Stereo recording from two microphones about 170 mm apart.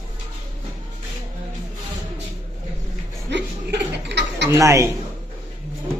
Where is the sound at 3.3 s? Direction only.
90° right.